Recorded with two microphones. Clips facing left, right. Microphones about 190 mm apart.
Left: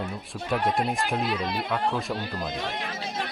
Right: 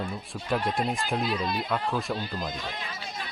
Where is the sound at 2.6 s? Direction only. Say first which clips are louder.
Left 5 dB; 75° left (ahead or behind).